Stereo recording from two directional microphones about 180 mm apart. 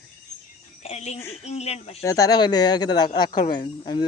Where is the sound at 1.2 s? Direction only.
15° left (ahead or behind).